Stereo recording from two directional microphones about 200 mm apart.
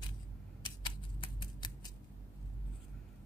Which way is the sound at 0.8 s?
20° left (ahead or behind).